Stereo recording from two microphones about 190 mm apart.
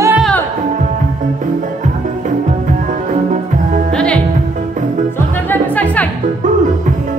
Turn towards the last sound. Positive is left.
turn(degrees=10)  # may be behind; listen again after turning